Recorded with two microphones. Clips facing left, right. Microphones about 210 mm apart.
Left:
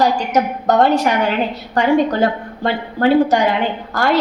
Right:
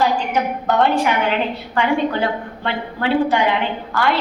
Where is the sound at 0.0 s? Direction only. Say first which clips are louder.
Left 3 dB; 40° left (ahead or behind).